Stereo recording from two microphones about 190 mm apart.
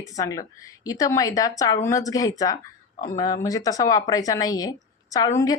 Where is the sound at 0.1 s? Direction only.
15° left (ahead or behind).